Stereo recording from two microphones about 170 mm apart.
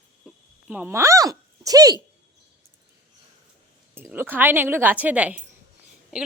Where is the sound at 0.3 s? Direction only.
10° right (ahead or behind).